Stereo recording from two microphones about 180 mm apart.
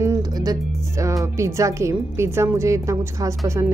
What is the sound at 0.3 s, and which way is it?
A woman's voice, 20° right (ahead or behind).